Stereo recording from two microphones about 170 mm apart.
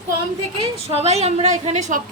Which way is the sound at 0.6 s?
35° right (ahead or behind).